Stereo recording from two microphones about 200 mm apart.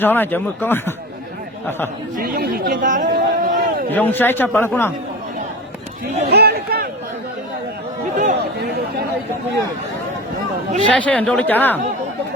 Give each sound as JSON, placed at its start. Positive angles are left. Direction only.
{"t": 0.0, "sound": "speech", "side_deg": 10}
{"t": 2.1, "sound": "speech", "side_deg": -50}
{"t": 3.9, "sound": "speech", "side_deg": 10}
{"t": 6.3, "sound": "a sound", "side_deg": -50}
{"t": 8.1, "sound": "chatter", "side_deg": -40}
{"t": 10.9, "sound": "speech", "side_deg": 5}